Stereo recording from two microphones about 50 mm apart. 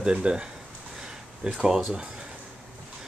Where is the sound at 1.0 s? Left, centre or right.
Centre.